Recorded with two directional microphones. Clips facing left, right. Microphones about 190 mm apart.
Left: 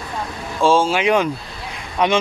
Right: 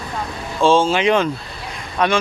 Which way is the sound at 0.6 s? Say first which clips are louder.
Right 1 dB; 10° left (ahead or behind).